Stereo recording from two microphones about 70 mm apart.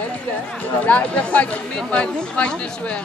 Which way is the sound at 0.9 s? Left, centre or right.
Left.